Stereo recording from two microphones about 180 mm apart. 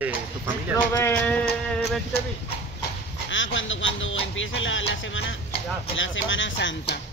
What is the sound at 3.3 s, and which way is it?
Speech, 90° left.